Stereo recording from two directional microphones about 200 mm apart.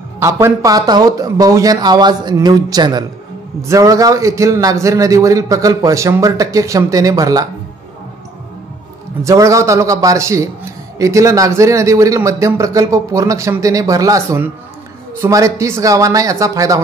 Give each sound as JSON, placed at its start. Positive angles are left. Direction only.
{"t": 0.2, "sound": "a man's voice", "side_deg": -15}
{"t": 9.2, "sound": "a man's voice", "side_deg": -15}